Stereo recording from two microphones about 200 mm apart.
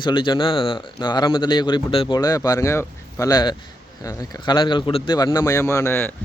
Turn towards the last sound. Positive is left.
turn(degrees=10)  # may be behind; listen again after turning